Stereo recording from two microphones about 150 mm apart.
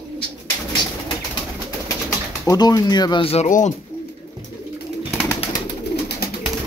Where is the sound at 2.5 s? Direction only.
25° left (ahead or behind).